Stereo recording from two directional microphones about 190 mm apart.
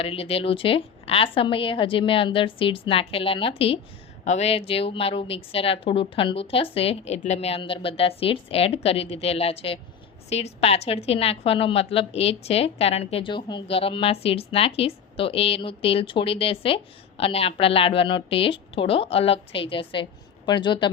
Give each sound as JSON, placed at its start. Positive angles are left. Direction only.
{"t": 0.0, "sound": "a woman's voice", "side_deg": 30}